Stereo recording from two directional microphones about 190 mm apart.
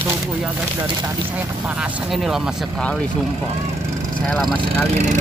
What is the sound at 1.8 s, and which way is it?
Speech, centre (ahead or behind).